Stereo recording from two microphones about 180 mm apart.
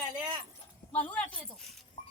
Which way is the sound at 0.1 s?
25° right (ahead or behind).